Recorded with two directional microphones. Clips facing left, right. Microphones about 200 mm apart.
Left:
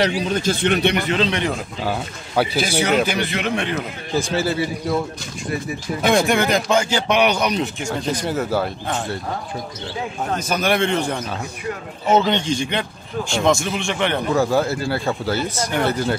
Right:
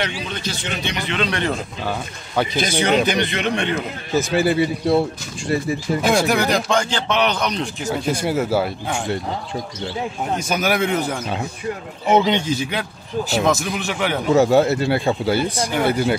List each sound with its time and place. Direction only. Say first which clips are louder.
0.0 s a man's voice: left 7 dB; 45° left (ahead or behind)
1.3 s speech: even; 10° left (ahead or behind)
4.4 s speech: right 6 dB; 15° right (ahead or behind)
6.0 s speech: left 2 dB; centre (ahead or behind)
7.9 s speech: right 4 dB; 10° right (ahead or behind)
10.3 s speech: left 1 dB; 10° right (ahead or behind)
14.3 s speech: right 7 dB; 25° right (ahead or behind)